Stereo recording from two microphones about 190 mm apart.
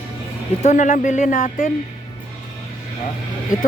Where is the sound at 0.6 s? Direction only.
40° left (ahead or behind).